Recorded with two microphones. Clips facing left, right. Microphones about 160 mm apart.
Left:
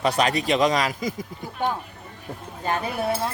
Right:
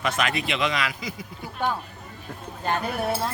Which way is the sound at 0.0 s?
35° left (ahead or behind).